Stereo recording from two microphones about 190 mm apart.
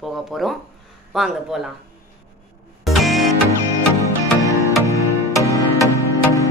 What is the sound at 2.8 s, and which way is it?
Music, centre (ahead or behind).